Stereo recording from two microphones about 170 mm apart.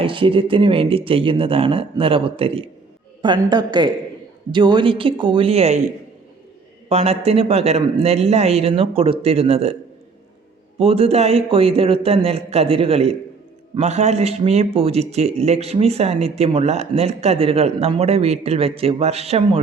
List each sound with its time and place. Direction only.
0.0 s a woman's voice: 30° right (ahead or behind)
6.8 s speech: 35° right (ahead or behind)
10.8 s speech: 35° right (ahead or behind)